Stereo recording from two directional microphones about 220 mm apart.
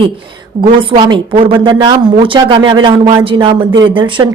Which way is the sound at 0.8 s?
20° right (ahead or behind).